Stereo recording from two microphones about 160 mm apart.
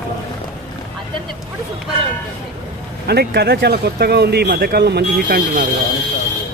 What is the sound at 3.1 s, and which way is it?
Speech, 90° right.